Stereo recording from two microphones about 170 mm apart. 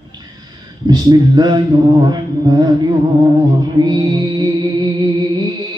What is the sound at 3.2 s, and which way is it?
Music, 25° right (ahead or behind).